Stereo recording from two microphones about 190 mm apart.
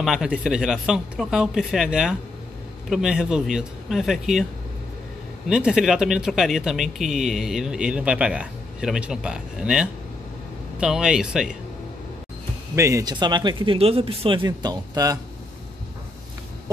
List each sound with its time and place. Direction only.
0.0 s speech: centre (ahead or behind)
5.5 s speech: 5° right (ahead or behind)
12.7 s speech: 15° right (ahead or behind)